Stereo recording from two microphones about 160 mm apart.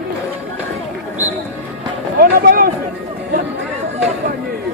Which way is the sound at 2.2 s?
65° right (ahead or behind).